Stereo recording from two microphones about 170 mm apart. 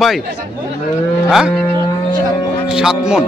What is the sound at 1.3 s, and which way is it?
Speech, centre (ahead or behind).